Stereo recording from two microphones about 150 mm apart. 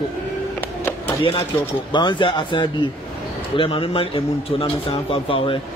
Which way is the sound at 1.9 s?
30° left (ahead or behind).